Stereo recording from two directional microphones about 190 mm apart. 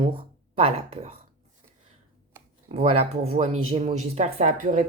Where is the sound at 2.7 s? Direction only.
30° right (ahead or behind).